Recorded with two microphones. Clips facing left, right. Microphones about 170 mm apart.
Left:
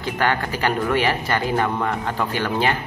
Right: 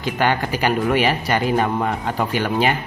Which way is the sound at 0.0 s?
15° right (ahead or behind).